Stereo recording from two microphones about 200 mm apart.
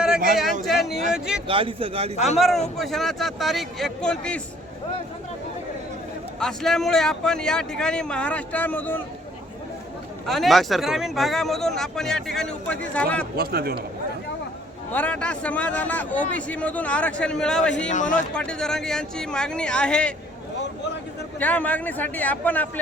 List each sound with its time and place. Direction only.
0.6 s speech: centre (ahead or behind)
1.5 s speech: 25° right (ahead or behind)
2.1 s speech: 35° left (ahead or behind)
2.7 s speech: centre (ahead or behind)
6.4 s speech: centre (ahead or behind)
10.2 s speech: centre (ahead or behind)
13.3 s a man's voice: 50° right (ahead or behind)
14.9 s a man's voice: 5° left (ahead or behind)
17.8 s speech: 40° left (ahead or behind)
18.3 s speech: 5° left (ahead or behind)
21.3 s a man's voice: 10° left (ahead or behind)